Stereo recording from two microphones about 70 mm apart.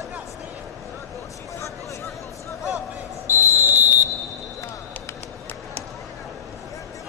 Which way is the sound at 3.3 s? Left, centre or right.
Right.